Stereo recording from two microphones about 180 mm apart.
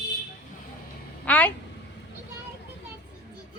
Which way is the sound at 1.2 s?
10° left (ahead or behind).